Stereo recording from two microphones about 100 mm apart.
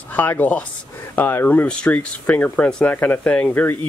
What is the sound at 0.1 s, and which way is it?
Speech, 20° left (ahead or behind).